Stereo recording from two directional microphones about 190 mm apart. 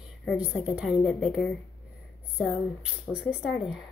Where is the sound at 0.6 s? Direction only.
5° right (ahead or behind).